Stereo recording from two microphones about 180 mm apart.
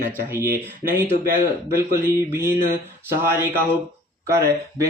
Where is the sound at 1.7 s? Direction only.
15° right (ahead or behind).